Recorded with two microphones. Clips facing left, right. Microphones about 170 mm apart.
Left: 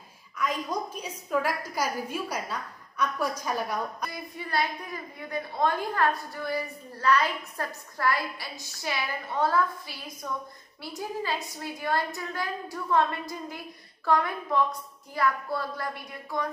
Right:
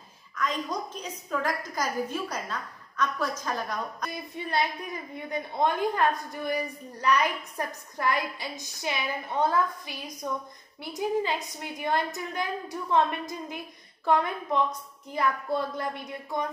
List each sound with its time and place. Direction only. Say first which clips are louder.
0.4 s a woman's voice: left 1 dB; 10° left (ahead or behind)
4.1 s a woman's voice: right 1 dB; 20° right (ahead or behind)